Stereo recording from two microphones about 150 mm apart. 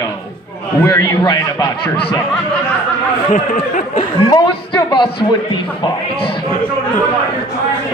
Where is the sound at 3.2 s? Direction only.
55° left (ahead or behind).